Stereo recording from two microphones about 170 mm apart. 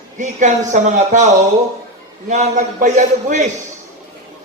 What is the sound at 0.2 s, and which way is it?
Speech, 45° right (ahead or behind).